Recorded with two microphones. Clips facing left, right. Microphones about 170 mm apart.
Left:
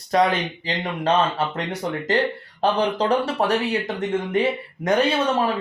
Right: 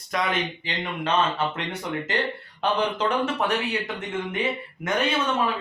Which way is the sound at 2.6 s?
35° left (ahead or behind).